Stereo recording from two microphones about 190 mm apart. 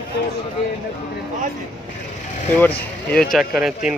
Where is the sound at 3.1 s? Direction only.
5° left (ahead or behind).